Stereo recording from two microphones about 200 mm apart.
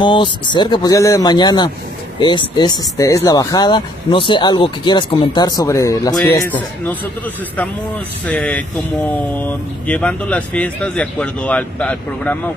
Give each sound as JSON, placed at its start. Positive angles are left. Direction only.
{"t": 0.0, "sound": "speech", "side_deg": 25}
{"t": 8.3, "sound": "speech", "side_deg": 5}